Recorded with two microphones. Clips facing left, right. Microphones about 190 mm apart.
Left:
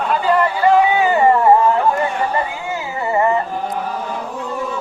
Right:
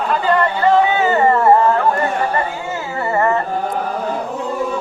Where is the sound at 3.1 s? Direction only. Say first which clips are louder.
Left 1 dB; 15° left (ahead or behind).